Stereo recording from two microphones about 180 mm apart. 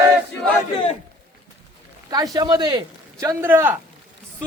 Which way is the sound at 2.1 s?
20° right (ahead or behind).